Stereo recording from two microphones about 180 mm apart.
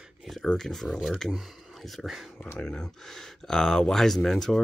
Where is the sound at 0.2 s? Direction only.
Centre (ahead or behind).